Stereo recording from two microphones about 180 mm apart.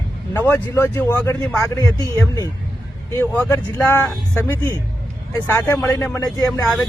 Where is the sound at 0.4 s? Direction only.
10° left (ahead or behind).